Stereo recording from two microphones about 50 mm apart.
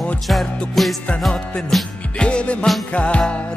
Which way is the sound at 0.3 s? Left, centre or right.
Centre.